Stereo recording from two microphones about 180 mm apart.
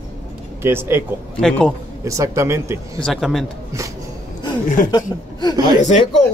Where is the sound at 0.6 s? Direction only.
15° right (ahead or behind).